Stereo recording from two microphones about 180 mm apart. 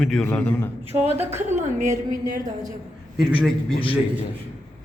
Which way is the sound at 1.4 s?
40° right (ahead or behind).